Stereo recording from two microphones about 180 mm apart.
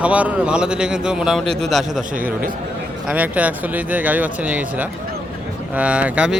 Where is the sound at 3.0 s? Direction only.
10° right (ahead or behind).